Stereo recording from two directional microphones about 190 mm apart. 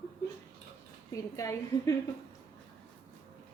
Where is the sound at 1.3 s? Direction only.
15° left (ahead or behind).